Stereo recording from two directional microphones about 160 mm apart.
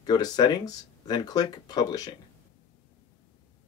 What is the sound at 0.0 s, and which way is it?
Speech, 25° left (ahead or behind).